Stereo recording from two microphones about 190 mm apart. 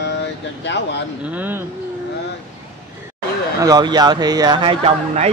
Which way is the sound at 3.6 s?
20° right (ahead or behind).